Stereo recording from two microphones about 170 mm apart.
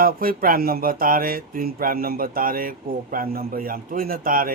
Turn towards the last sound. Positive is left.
turn(degrees=-55)  # may be behind; listen again after turning